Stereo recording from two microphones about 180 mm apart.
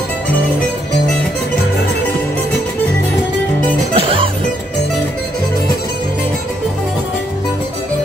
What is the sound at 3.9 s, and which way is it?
Music, 30° right (ahead or behind).